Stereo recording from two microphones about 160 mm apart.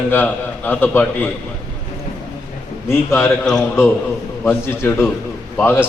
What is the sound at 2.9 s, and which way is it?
A man's voice, 15° left (ahead or behind).